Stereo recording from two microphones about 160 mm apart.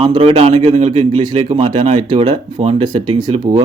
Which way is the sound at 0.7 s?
45° right (ahead or behind).